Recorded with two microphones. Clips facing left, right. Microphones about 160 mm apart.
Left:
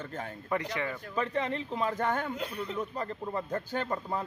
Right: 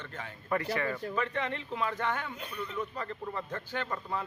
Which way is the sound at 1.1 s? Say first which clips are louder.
Left 2 dB; 35° left (ahead or behind).